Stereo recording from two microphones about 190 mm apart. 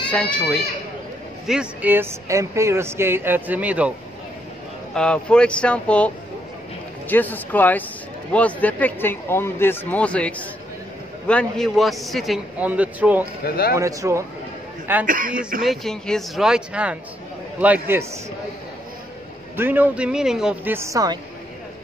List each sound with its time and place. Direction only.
0.1 s speech: 5° left (ahead or behind)
1.5 s speech: 5° right (ahead or behind)
4.9 s a man's voice: 5° left (ahead or behind)
13.4 s speech: 55° left (ahead or behind)
13.7 s speech: 15° right (ahead or behind)
15.0 s a man's voice: 45° right (ahead or behind)
15.6 s a man's voice: centre (ahead or behind)
19.5 s speech: 10° right (ahead or behind)